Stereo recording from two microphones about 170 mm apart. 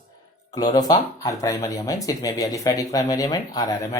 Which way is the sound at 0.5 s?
25° left (ahead or behind).